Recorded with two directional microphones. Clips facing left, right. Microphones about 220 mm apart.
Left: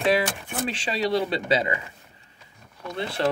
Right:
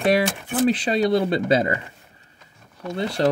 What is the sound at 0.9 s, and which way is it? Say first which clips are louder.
Speech: right 5 dB; 50° right (ahead or behind).